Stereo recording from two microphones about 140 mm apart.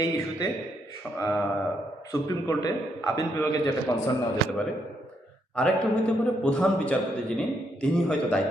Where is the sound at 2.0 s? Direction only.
25° left (ahead or behind).